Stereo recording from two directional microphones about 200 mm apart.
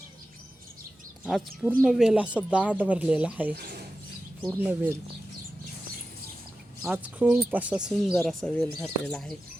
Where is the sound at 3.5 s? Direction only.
50° right (ahead or behind).